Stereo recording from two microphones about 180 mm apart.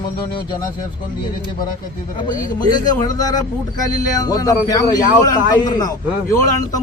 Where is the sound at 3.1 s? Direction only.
20° left (ahead or behind).